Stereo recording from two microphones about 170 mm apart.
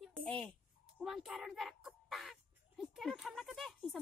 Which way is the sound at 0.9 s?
Centre (ahead or behind).